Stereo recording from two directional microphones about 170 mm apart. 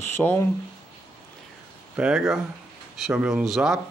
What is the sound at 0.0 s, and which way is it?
Speech, 15° left (ahead or behind).